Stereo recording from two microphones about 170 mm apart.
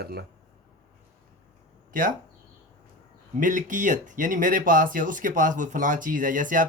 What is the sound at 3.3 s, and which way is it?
Speech, 50° right (ahead or behind).